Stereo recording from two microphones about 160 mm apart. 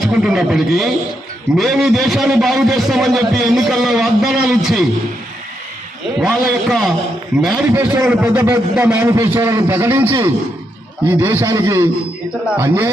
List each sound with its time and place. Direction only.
0.0 s a man's voice: 5° right (ahead or behind)
6.1 s a man's voice: 5° right (ahead or behind)